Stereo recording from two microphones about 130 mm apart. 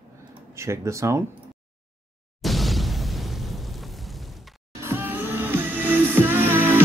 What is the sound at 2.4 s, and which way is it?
Explosion, centre (ahead or behind).